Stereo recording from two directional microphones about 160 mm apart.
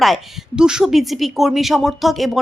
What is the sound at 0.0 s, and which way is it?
A woman's voice, centre (ahead or behind).